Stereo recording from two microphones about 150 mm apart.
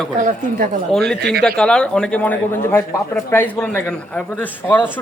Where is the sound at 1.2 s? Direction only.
90° right.